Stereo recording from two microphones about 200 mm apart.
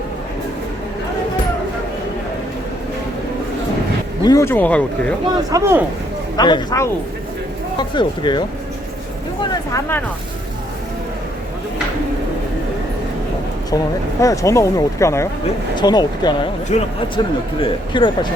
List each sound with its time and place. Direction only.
4.2 s speech: 15° left (ahead or behind)
5.5 s speech: 15° right (ahead or behind)
6.3 s speech: 20° left (ahead or behind)
14.2 s speech: 15° left (ahead or behind)
16.7 s speech: 35° left (ahead or behind)
17.2 s speech: 20° left (ahead or behind)